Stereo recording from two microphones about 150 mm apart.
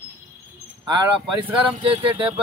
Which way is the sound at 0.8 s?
30° right (ahead or behind).